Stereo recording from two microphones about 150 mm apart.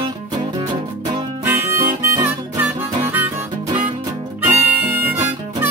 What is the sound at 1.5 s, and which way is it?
Harmonica, 20° right (ahead or behind).